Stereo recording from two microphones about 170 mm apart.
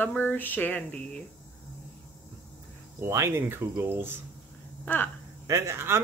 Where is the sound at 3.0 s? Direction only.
15° right (ahead or behind).